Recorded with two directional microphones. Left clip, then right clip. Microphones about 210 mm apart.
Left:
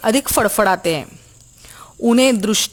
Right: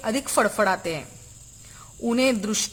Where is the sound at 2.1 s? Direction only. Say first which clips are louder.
Left 8 dB; 40° left (ahead or behind).